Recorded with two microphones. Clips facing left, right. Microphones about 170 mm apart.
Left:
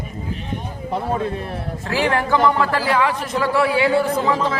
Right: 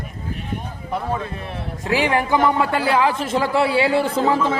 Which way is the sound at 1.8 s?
15° right (ahead or behind).